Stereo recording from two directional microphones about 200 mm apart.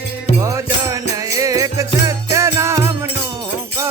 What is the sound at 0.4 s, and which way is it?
Music, 15° right (ahead or behind).